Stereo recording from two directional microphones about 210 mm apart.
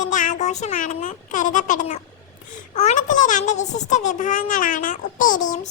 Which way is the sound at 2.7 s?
35° left (ahead or behind).